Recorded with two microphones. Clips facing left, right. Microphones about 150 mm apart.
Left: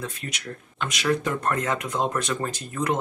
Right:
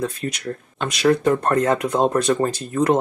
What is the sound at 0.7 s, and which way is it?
Speech, 35° right (ahead or behind).